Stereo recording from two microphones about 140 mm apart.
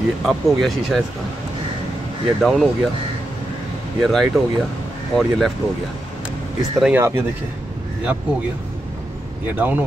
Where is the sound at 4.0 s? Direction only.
Centre (ahead or behind).